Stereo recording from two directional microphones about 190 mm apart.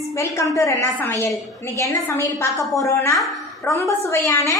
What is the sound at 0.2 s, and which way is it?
A woman's voice, 15° left (ahead or behind).